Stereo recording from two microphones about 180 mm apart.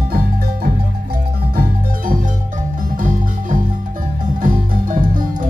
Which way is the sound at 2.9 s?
45° right (ahead or behind).